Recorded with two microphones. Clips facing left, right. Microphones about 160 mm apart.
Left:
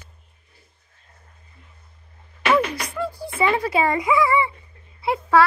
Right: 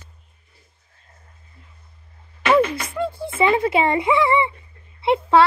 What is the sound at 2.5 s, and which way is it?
A woman's voice, 25° right (ahead or behind).